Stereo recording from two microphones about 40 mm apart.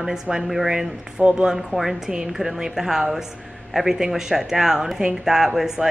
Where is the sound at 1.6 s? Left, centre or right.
Centre.